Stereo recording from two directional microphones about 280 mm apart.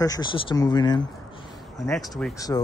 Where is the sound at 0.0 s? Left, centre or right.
Centre.